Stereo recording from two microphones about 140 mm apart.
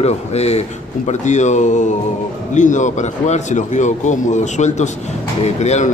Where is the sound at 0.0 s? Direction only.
50° left (ahead or behind).